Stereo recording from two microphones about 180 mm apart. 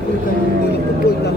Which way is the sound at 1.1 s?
65° left (ahead or behind).